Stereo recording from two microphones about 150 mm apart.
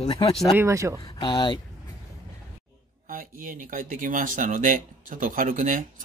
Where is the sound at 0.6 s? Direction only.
20° right (ahead or behind).